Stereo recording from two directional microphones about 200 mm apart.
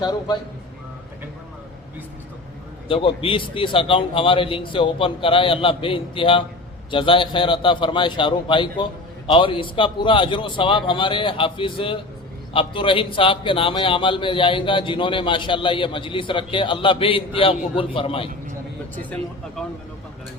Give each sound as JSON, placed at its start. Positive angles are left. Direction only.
{"t": 0.0, "sound": "a man's voice", "side_deg": 20}
{"t": 2.9, "sound": "a man's voice", "side_deg": 25}